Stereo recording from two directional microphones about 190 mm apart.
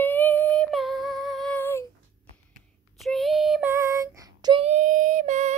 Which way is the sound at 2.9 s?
Centre (ahead or behind).